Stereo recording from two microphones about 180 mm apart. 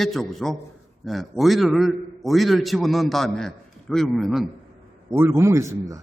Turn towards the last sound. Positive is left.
turn(degrees=-15)  # may be behind; listen again after turning